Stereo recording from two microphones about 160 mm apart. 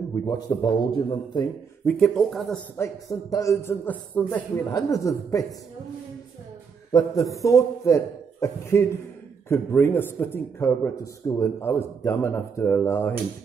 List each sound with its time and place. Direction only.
0.1 s a man's voice: 20° left (ahead or behind)
1.9 s speech: 5° left (ahead or behind)
2.8 s a man's voice: 20° left (ahead or behind)
6.9 s a man's voice: 25° left (ahead or behind)